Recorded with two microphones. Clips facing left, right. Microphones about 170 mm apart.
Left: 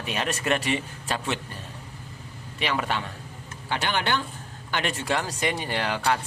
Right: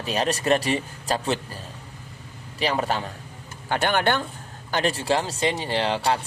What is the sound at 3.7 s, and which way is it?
Speech, 50° right (ahead or behind).